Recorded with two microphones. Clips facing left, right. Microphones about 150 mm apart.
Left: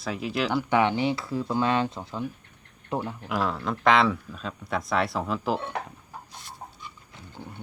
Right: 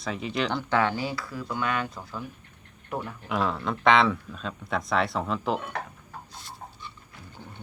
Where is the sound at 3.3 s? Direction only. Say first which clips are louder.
Right 1 dB; centre (ahead or behind).